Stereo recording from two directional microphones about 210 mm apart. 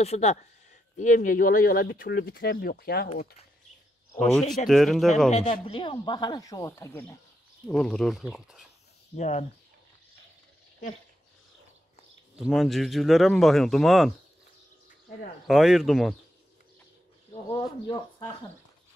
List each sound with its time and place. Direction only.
0.0 s speech: 30° left (ahead or behind); by 3.1 s 45° left (ahead or behind)
4.2 s speech: 5° left (ahead or behind)
5.3 s speech: 30° left (ahead or behind); by 8.6 s centre (ahead or behind)
9.1 s speech: 35° left (ahead or behind)
12.4 s speech: centre (ahead or behind)
15.4 s speech: centre (ahead or behind)
17.5 s speech: 15° left (ahead or behind)